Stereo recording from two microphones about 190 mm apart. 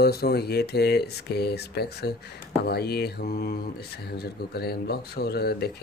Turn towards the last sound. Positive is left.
turn(degrees=55)  # may be behind; listen again after turning